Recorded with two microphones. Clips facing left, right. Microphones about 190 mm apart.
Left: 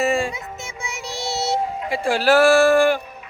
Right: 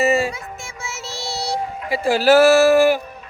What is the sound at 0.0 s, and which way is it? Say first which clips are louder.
Music: right 3 dB; 5° right (ahead or behind).